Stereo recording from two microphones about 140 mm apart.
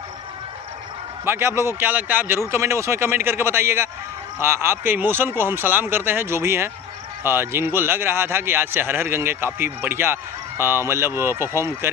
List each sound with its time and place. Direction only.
1.2 s a man's voice: 15° right (ahead or behind)